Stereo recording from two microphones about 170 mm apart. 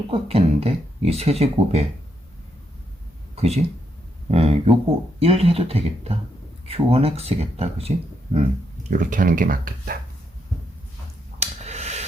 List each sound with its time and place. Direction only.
0.1 s speech: 35° right (ahead or behind)
3.3 s speech: 40° right (ahead or behind)
8.9 s speech: 50° right (ahead or behind)
11.3 s a sound: 40° right (ahead or behind)